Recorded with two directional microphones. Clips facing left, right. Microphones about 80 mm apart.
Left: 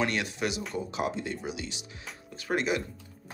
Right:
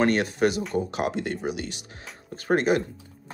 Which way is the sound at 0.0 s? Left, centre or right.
Right.